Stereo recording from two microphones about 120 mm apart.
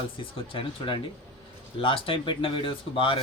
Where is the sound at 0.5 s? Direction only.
45° left (ahead or behind).